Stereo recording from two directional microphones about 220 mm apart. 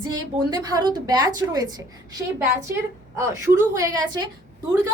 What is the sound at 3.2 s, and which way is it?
A woman's voice, 15° right (ahead or behind).